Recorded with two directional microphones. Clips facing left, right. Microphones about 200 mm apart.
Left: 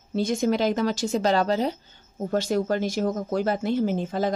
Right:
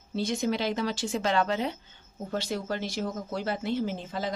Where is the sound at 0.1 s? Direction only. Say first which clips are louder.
Left 5 dB; 50° left (ahead or behind).